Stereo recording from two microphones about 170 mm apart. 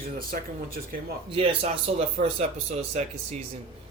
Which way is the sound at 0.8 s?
55° right (ahead or behind).